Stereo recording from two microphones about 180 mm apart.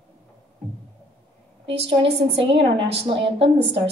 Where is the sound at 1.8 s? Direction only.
30° right (ahead or behind).